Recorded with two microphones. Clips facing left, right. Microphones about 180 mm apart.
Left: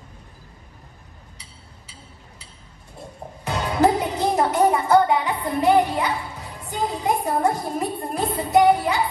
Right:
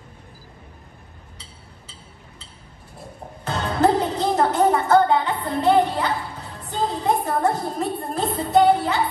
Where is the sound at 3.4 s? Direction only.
15° left (ahead or behind).